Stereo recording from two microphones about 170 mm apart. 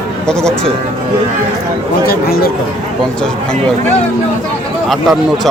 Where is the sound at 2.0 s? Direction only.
60° left (ahead or behind).